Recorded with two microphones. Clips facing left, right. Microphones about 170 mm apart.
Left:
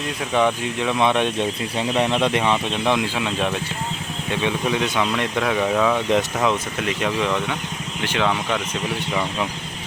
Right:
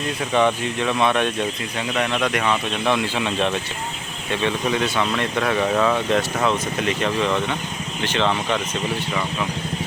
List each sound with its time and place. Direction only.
0.3 s speech: 10° left (ahead or behind)
3.2 s speech: 5° left (ahead or behind)
6.1 s speech: 15° left (ahead or behind)